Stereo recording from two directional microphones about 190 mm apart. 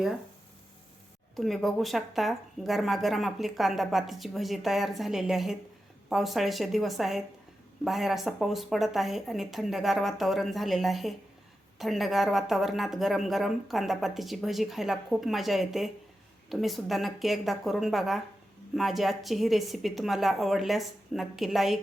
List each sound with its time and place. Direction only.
1.4 s a woman's voice: centre (ahead or behind)